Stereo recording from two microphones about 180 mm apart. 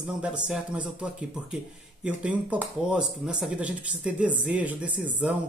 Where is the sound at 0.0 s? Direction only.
5° right (ahead or behind).